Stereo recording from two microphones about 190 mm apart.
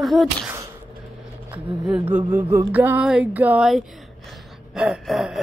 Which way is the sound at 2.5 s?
10° right (ahead or behind).